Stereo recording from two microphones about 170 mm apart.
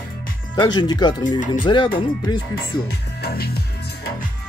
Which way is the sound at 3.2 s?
65° left (ahead or behind).